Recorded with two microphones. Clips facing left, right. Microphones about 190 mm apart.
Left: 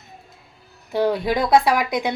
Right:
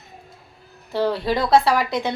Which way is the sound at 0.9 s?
15° left (ahead or behind).